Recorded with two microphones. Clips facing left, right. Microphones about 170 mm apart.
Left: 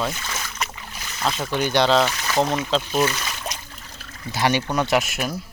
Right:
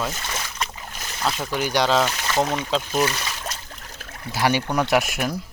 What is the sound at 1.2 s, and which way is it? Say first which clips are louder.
Speech: left 1 dB; 5° right (ahead or behind).